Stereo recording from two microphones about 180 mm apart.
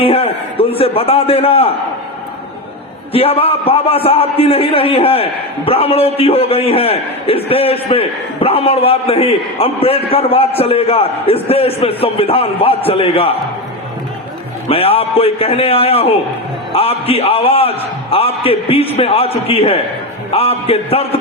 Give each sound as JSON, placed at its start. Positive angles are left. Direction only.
{"t": 0.0, "sound": "a man's voice", "side_deg": 30}
{"t": 3.1, "sound": "a man's voice", "side_deg": 30}
{"t": 14.7, "sound": "a man's voice", "side_deg": 30}